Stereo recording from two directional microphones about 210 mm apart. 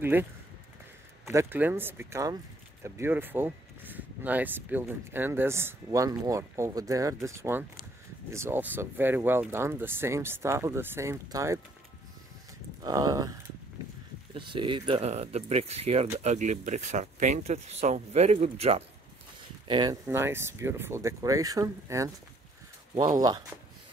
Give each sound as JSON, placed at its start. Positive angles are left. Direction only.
{"t": 0.0, "sound": "speech", "side_deg": -10}
{"t": 12.8, "sound": "speech", "side_deg": -15}
{"t": 14.3, "sound": "speech", "side_deg": -25}
{"t": 19.7, "sound": "speech", "side_deg": -20}